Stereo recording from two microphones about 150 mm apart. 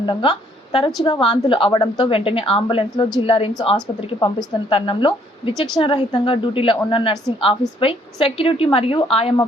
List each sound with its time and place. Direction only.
0.0 s a woman's voice: 30° left (ahead or behind)